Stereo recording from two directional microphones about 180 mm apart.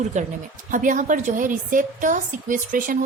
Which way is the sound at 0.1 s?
40° right (ahead or behind).